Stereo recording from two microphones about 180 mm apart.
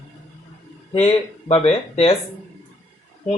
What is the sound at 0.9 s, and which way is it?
Speech, 35° left (ahead or behind).